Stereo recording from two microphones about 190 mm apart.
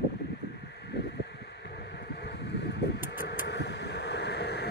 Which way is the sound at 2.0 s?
65° left (ahead or behind).